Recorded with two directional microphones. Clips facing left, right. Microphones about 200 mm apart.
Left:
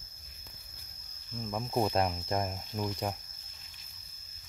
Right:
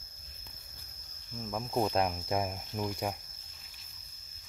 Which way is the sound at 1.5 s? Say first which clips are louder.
Even; centre (ahead or behind).